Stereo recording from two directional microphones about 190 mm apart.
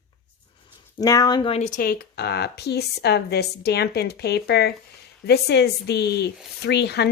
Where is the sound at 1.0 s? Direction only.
20° left (ahead or behind).